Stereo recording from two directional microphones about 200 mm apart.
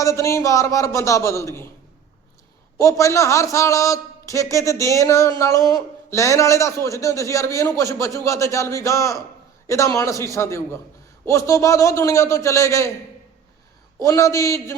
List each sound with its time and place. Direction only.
0.0 s a man's voice: 15° left (ahead or behind)
2.7 s a man's voice: 15° left (ahead or behind)
14.0 s a man's voice: 15° left (ahead or behind)